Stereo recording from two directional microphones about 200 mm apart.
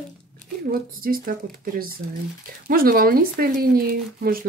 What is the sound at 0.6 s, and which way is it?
Speech, 45° right (ahead or behind).